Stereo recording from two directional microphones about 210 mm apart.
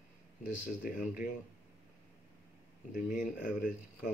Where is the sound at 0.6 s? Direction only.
40° left (ahead or behind).